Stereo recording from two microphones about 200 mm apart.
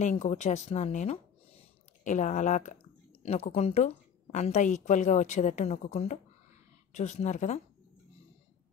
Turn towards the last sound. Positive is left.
turn(degrees=35)  # may be behind; listen again after turning